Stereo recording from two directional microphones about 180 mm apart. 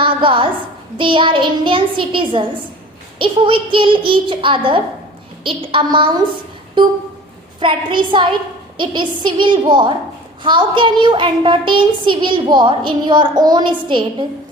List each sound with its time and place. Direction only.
0.0 s a woman's voice: 30° right (ahead or behind)
7.6 s a woman's voice: 25° right (ahead or behind)